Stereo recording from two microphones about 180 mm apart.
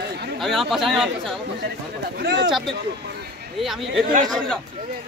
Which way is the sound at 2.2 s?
85° right.